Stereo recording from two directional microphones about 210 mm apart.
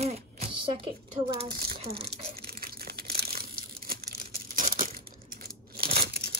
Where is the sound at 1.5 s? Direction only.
45° right (ahead or behind).